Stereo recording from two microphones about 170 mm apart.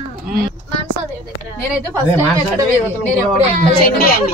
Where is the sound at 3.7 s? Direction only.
60° left (ahead or behind).